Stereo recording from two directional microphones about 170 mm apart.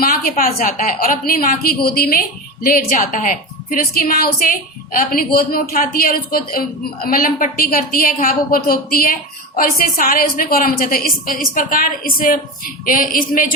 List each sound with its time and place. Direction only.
0.0 s a woman's voice: 55° left (ahead or behind)